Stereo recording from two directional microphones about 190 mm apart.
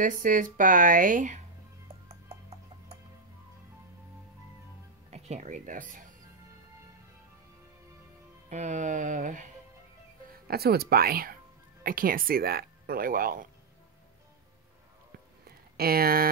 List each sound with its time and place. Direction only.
0.0 s speech: 45° right (ahead or behind)
5.1 s speech: 40° right (ahead or behind)
8.5 s speech: 40° right (ahead or behind)
10.5 s speech: 55° right (ahead or behind)
15.8 s speech: 50° right (ahead or behind)